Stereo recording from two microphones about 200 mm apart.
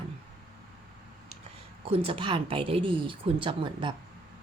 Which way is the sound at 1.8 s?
25° right (ahead or behind).